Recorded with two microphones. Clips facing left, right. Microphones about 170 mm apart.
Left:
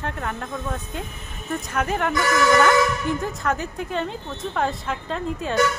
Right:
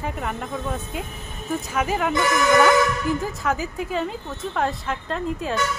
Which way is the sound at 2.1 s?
20° right (ahead or behind).